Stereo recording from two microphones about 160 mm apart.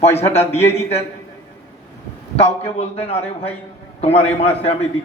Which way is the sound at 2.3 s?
40° left (ahead or behind).